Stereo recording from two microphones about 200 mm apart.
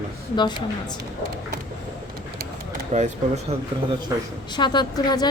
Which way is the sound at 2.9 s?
35° right (ahead or behind).